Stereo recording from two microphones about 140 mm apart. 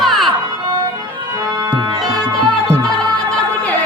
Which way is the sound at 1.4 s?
25° right (ahead or behind).